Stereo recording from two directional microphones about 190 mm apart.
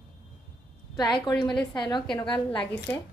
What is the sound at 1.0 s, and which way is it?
Speech, 20° left (ahead or behind).